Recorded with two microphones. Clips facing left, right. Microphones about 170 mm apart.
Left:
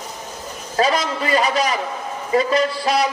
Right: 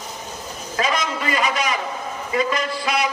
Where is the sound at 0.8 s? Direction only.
35° left (ahead or behind).